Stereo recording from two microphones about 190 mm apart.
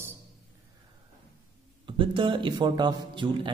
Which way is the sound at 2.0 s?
25° right (ahead or behind).